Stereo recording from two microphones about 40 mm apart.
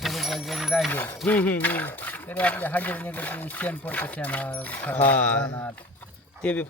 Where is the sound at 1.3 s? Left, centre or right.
Left.